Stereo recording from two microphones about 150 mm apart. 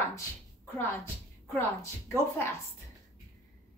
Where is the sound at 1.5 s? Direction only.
15° left (ahead or behind).